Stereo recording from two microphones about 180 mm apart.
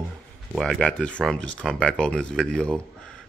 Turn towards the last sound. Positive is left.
turn(degrees=5)  # may be behind; listen again after turning